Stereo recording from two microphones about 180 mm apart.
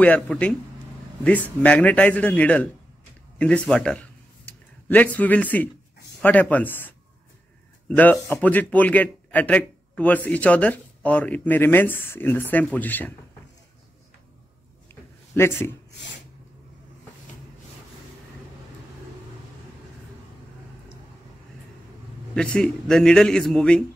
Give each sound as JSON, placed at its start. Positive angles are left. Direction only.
{"t": 0.0, "sound": "a man's voice", "side_deg": 5}
{"t": 7.9, "sound": "a man's voice", "side_deg": 10}
{"t": 15.3, "sound": "a man's voice", "side_deg": 15}
{"t": 15.9, "sound": "a sound", "side_deg": 80}
{"t": 22.3, "sound": "a man's voice", "side_deg": 5}